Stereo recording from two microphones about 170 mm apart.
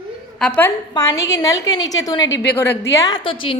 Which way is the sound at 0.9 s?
20° left (ahead or behind).